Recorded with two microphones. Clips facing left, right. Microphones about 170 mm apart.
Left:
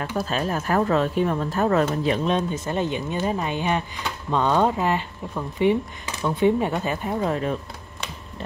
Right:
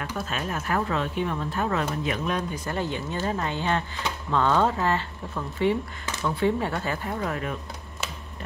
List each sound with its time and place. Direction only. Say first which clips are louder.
0.0 s speech: left 6 dB; 35° left (ahead or behind)
2.0 s speech: left 6 dB; 25° left (ahead or behind)